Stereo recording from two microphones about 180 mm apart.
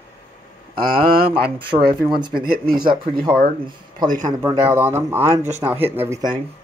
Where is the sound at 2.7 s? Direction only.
25° right (ahead or behind).